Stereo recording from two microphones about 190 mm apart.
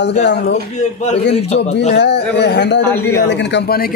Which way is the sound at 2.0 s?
65° left (ahead or behind).